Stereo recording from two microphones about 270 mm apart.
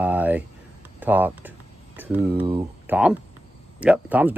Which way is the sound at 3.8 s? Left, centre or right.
Centre.